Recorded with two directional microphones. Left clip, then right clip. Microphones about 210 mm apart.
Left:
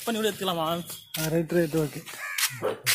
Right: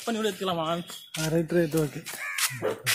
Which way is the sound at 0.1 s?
50° left (ahead or behind).